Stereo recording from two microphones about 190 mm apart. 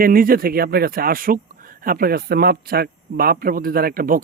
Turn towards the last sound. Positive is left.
turn(degrees=-50)  # may be behind; listen again after turning